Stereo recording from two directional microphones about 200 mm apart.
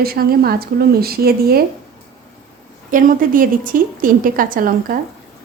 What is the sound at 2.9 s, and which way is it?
A woman's voice, 45° right (ahead or behind).